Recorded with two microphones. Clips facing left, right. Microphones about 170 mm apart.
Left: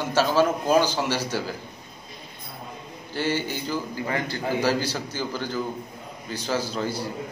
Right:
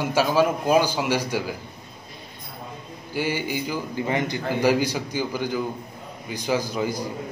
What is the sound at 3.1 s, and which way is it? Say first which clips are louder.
A man's voice: right 1 dB; 10° right (ahead or behind).